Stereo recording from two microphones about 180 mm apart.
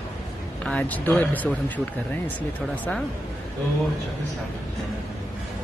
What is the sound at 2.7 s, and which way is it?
Speech, 10° left (ahead or behind).